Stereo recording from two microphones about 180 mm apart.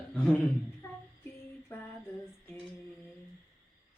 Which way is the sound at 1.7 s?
10° left (ahead or behind).